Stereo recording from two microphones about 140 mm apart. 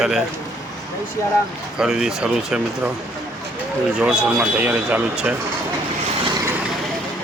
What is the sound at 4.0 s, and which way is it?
A man's voice, 5° right (ahead or behind).